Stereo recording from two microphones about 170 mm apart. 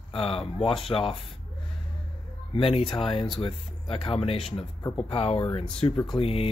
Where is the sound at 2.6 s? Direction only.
30° left (ahead or behind).